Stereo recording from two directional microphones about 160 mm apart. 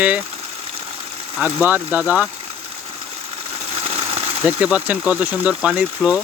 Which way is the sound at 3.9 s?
40° right (ahead or behind).